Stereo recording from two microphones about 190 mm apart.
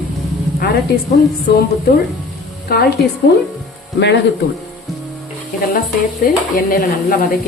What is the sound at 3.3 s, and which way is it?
Speech, 65° left (ahead or behind).